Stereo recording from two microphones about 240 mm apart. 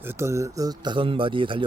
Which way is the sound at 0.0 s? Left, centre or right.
Centre.